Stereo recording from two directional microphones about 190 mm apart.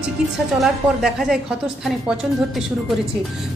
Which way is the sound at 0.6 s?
5° right (ahead or behind).